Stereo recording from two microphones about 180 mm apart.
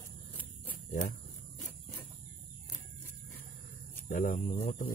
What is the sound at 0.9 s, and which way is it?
Speech, 45° left (ahead or behind).